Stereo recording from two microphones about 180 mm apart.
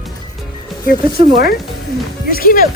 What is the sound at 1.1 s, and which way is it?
Speech, 25° right (ahead or behind).